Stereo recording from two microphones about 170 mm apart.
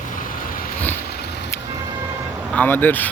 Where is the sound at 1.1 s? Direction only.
70° left (ahead or behind).